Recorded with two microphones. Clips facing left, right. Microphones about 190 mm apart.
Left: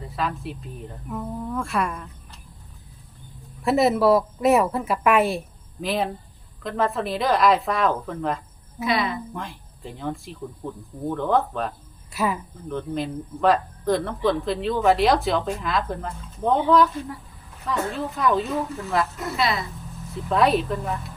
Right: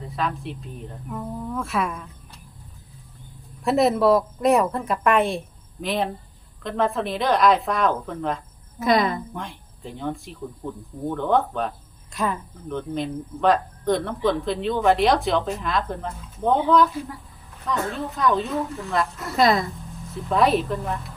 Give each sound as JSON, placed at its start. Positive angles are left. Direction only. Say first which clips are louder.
{"t": 0.2, "sound": "speech", "louder": "even", "side_deg": 0}
{"t": 3.6, "sound": "speech", "louder": "even", "side_deg": 0}
{"t": 8.8, "sound": "a woman's voice", "louder": "right 4 dB", "side_deg": -45}
{"t": 9.3, "sound": "speech", "louder": "even", "side_deg": 0}
{"t": 19.4, "sound": "a woman's voice", "louder": "right 6 dB", "side_deg": -45}
{"t": 20.3, "sound": "speech", "louder": "even", "side_deg": 0}